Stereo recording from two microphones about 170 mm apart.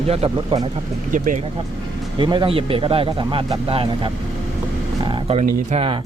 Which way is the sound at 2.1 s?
30° right (ahead or behind).